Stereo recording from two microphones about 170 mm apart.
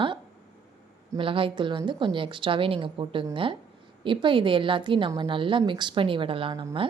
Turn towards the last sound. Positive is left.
turn(degrees=-30)  # may be behind; listen again after turning